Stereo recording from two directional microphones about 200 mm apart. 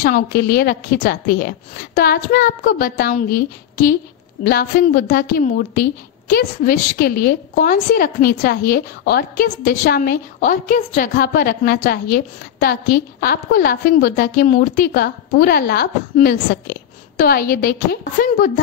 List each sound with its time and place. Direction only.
0.0 s a woman's voice: 50° left (ahead or behind)